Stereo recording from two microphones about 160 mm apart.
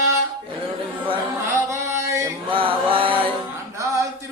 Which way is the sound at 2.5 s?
35° right (ahead or behind).